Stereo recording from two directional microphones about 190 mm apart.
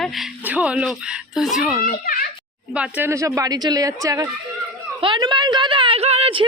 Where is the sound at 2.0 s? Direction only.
50° left (ahead or behind).